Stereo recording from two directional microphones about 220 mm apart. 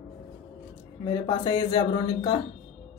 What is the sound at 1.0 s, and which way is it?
Speech, 20° left (ahead or behind).